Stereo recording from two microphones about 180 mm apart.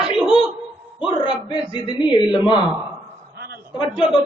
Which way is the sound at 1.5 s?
25° left (ahead or behind).